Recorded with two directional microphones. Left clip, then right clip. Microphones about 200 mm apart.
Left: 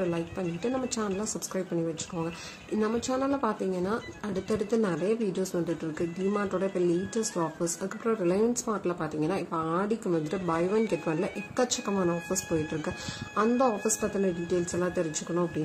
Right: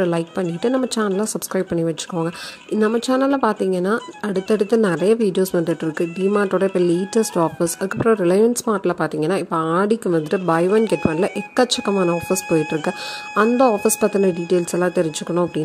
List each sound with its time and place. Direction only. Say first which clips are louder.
0.0 s speech: right 10 dB; 45° right (ahead or behind)
2.8 s speech: right 11 dB; 40° right (ahead or behind)